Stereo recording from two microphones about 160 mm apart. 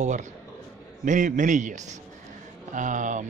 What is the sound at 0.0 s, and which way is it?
Speech, 50° right (ahead or behind).